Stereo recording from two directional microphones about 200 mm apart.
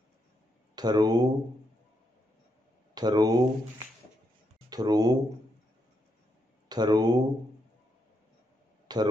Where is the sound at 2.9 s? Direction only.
20° right (ahead or behind).